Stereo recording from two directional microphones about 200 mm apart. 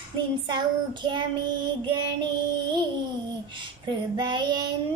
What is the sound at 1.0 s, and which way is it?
Child singing, 25° right (ahead or behind).